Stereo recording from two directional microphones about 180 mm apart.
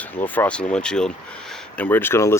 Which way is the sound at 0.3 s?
5° left (ahead or behind).